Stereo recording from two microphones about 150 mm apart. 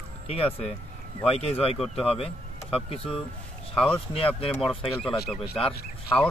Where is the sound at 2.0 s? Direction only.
40° left (ahead or behind).